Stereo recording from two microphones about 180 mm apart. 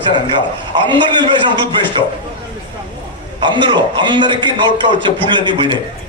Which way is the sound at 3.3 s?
25° right (ahead or behind).